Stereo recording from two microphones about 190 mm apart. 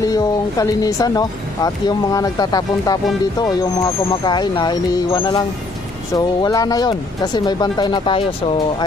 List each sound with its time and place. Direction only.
0.0 s speech: 20° left (ahead or behind)